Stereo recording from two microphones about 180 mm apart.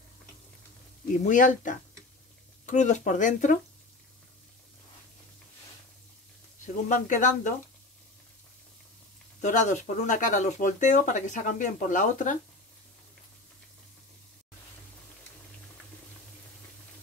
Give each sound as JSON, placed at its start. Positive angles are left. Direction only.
{"t": 1.2, "sound": "speech", "side_deg": 45}
{"t": 6.6, "sound": "speech", "side_deg": 45}
{"t": 9.4, "sound": "speech", "side_deg": 45}